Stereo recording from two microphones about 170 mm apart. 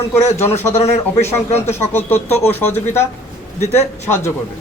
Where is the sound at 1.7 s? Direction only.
10° left (ahead or behind).